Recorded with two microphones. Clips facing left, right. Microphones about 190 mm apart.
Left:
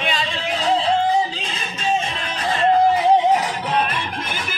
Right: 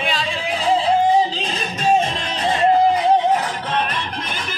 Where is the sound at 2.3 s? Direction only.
20° right (ahead or behind).